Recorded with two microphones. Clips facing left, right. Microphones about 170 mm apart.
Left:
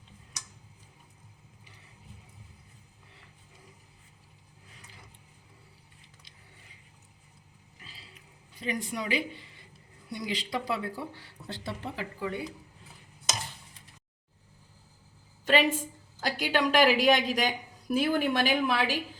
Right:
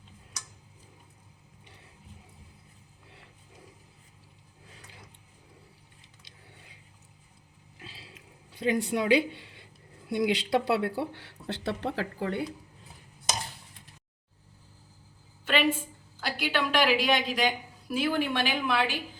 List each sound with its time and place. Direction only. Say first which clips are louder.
7.9 s a sound: right 4 dB; 70° right (ahead or behind)
10.2 s speech: right 8 dB; 70° right (ahead or behind)
15.4 s a woman's voice: left 1 dB; 40° left (ahead or behind)